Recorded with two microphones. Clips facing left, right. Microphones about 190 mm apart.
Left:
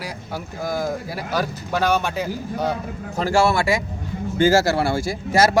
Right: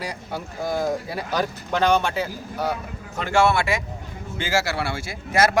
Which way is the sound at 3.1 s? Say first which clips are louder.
Left 1 dB; 35° left (ahead or behind).